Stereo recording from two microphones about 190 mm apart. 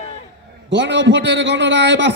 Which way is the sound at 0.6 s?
70° right (ahead or behind).